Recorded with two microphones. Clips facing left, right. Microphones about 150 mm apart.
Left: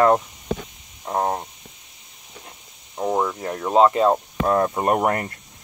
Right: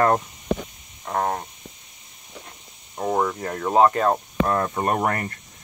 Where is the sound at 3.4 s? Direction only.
15° left (ahead or behind).